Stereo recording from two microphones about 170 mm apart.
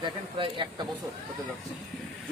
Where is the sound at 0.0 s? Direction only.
30° right (ahead or behind).